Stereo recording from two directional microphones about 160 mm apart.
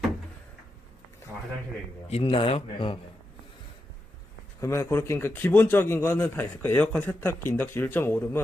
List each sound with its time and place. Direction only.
2.0 s speech: 35° left (ahead or behind)
4.6 s speech: 20° left (ahead or behind)